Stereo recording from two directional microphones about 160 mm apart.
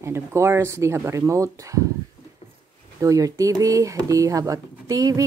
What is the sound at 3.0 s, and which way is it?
Speech, 20° right (ahead or behind).